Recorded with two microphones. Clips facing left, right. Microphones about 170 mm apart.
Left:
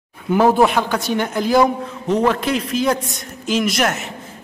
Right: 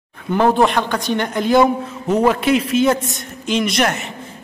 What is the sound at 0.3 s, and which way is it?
A man's voice, 5° left (ahead or behind).